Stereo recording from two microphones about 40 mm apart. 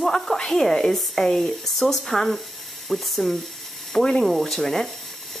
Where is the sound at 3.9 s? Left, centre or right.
Centre.